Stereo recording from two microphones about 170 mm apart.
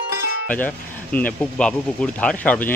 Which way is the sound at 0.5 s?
10° left (ahead or behind).